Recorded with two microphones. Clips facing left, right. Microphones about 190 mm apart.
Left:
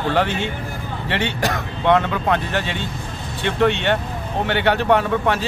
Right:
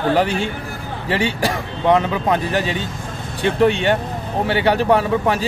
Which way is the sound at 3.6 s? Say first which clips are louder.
Right 2 dB; 10° right (ahead or behind).